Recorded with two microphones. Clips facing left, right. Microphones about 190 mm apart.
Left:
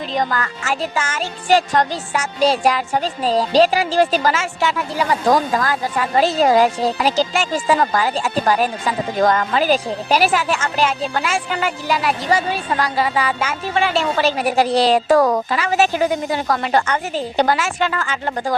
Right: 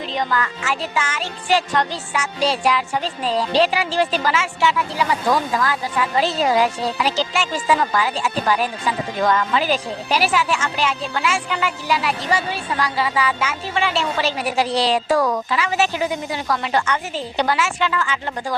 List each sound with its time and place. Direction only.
0.1 s music: 45° left (ahead or behind)